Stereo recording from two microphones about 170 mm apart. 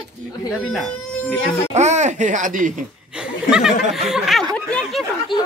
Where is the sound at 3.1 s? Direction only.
5° right (ahead or behind).